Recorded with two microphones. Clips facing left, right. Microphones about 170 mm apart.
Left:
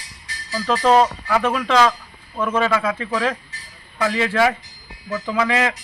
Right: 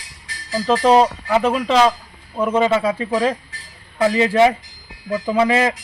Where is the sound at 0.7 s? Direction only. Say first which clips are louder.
Right 2 dB; 20° right (ahead or behind).